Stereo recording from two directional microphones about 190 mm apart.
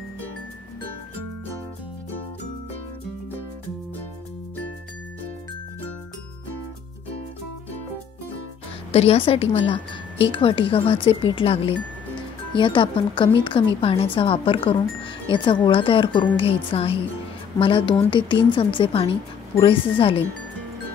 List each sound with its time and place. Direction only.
8.9 s a woman's voice: 30° left (ahead or behind)